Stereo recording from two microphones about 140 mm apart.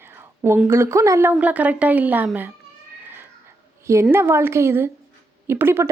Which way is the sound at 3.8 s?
20° right (ahead or behind).